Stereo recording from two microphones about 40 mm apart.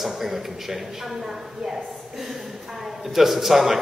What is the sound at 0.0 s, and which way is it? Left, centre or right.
A man's voice, centre.